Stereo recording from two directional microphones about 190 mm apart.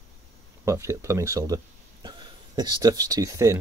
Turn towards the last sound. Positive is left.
turn(degrees=-15)  # may be behind; listen again after turning